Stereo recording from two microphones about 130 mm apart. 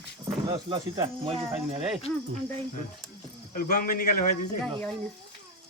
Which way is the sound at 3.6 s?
90° left.